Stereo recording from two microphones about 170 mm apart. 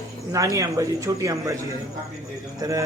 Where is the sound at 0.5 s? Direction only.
20° right (ahead or behind).